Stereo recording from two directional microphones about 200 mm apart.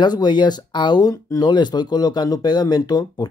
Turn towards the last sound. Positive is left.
turn(degrees=20)  # may be behind; listen again after turning